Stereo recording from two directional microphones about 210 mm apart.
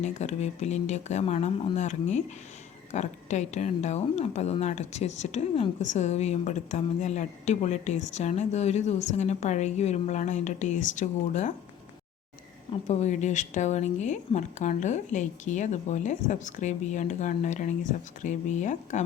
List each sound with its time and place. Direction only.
0.0 s speech: 35° left (ahead or behind)
12.9 s speech: 35° left (ahead or behind)